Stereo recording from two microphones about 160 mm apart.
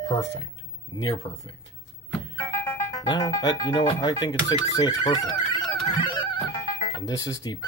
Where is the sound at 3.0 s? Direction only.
25° left (ahead or behind).